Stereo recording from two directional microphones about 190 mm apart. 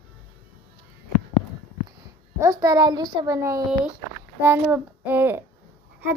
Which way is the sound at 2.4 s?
15° right (ahead or behind).